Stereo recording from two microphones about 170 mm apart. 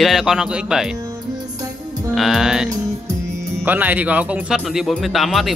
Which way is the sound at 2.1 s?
Centre (ahead or behind).